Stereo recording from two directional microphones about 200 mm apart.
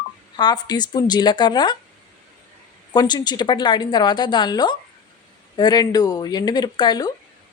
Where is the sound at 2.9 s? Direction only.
20° left (ahead or behind).